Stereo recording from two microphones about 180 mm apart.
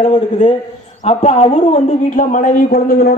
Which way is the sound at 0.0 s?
35° left (ahead or behind).